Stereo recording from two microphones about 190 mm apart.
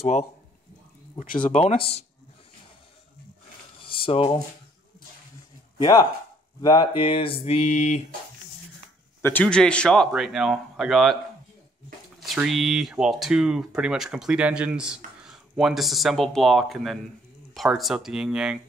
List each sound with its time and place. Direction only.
0.0 s mantra: 35° left (ahead or behind)
1.5 s mantra: 35° left (ahead or behind)
3.8 s a sound: 30° left (ahead or behind)
5.8 s speech: 20° left (ahead or behind)
7.0 s mantra: 30° left (ahead or behind)
9.2 s speech: 10° left (ahead or behind)
12.2 s speech: centre (ahead or behind)